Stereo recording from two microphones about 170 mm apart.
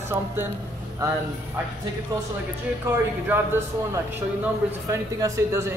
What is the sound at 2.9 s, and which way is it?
Speech, 15° right (ahead or behind).